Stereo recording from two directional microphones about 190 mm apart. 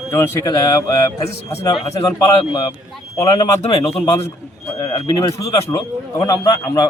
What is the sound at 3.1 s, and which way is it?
Speech, 15° left (ahead or behind).